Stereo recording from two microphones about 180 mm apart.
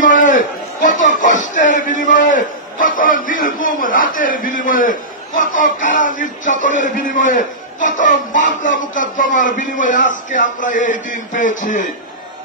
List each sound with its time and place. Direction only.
0.0 s a man's voice: 50° left (ahead or behind)